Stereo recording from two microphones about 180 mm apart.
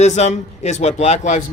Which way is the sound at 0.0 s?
40° left (ahead or behind).